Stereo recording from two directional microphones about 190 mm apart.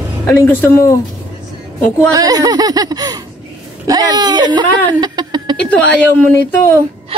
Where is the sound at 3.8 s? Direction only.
20° right (ahead or behind).